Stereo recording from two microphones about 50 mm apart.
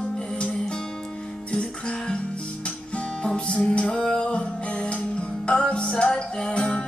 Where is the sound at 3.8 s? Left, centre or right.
Centre.